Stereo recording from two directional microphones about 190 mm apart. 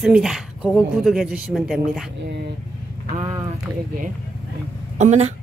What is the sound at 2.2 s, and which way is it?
Speech, 65° right (ahead or behind).